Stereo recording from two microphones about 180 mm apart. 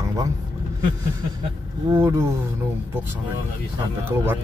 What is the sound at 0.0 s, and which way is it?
Vehicle, 20° right (ahead or behind).